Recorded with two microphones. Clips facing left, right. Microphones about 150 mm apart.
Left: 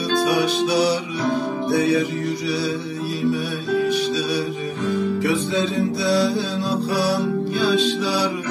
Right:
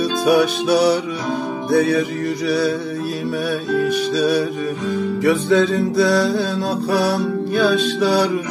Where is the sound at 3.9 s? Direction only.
50° right (ahead or behind).